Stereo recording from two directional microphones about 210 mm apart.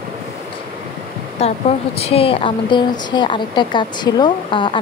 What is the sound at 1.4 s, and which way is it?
A woman's voice, 30° left (ahead or behind).